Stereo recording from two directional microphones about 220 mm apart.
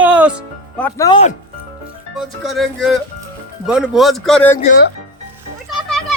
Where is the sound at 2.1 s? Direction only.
Centre (ahead or behind).